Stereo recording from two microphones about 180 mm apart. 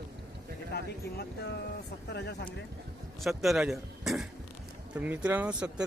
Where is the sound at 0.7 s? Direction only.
60° left (ahead or behind).